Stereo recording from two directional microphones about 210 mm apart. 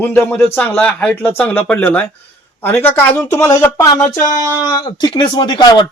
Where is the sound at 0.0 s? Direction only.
10° left (ahead or behind).